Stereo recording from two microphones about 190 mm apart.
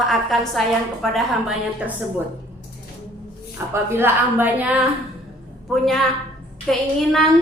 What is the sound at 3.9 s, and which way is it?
Speech, 10° right (ahead or behind).